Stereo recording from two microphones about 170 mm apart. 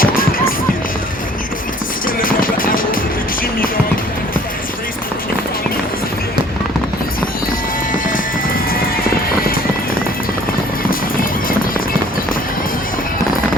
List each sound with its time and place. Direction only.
0.0 s music: 55° left (ahead or behind)
2.0 s music: 55° left (ahead or behind)